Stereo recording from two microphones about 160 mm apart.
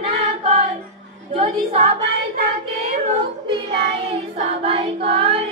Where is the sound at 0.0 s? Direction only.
40° right (ahead or behind).